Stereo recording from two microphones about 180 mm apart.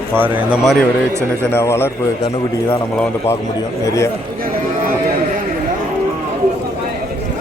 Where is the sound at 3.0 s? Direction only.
15° left (ahead or behind).